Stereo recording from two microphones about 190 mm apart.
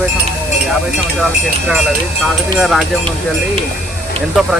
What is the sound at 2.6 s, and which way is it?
Speech, centre (ahead or behind).